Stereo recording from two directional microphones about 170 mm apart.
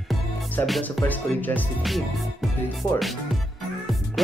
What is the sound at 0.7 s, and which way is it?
Speech, centre (ahead or behind).